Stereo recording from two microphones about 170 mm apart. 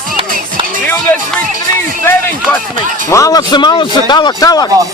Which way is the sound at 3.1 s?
20° left (ahead or behind).